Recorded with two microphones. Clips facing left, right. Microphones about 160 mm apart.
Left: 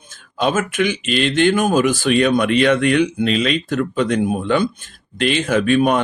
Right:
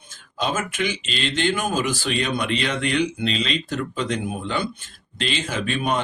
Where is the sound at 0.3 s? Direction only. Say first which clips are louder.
Left 7 dB; 55° left (ahead or behind).